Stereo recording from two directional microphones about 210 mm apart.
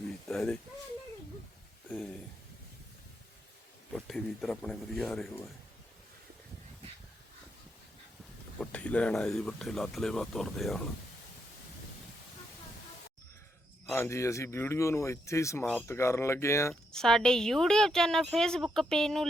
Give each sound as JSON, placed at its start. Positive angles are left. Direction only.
{"t": 0.3, "sound": "a sound", "side_deg": 5}
{"t": 1.9, "sound": "a sound", "side_deg": 5}
{"t": 3.9, "sound": "speech", "side_deg": 0}
{"t": 8.5, "sound": "speech", "side_deg": 5}
{"t": 13.8, "sound": "speech", "side_deg": 10}
{"t": 17.0, "sound": "speech", "side_deg": 5}